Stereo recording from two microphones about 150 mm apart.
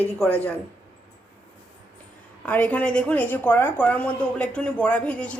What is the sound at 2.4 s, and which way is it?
A woman's voice, 10° left (ahead or behind).